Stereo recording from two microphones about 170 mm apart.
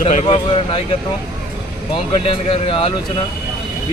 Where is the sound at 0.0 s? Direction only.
40° left (ahead or behind).